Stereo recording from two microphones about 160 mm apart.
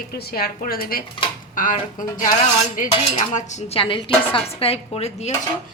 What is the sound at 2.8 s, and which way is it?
Dishes, 55° left (ahead or behind).